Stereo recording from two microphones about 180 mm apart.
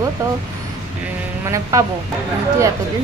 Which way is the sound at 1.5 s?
15° right (ahead or behind).